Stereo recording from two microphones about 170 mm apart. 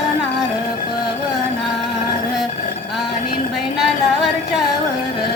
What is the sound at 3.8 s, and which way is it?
Music, centre (ahead or behind).